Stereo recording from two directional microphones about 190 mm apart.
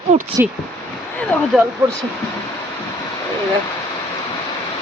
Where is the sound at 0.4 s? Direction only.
10° right (ahead or behind).